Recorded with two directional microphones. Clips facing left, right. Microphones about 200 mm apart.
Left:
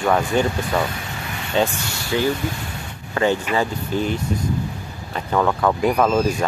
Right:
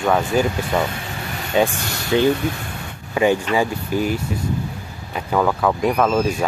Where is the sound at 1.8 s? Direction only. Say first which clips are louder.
Right 2 dB; 60° right (ahead or behind).